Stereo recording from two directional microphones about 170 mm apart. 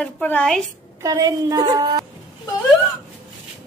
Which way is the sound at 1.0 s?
20° right (ahead or behind).